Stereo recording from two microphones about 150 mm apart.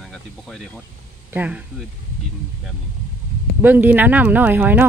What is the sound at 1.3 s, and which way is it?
Speech, 10° right (ahead or behind).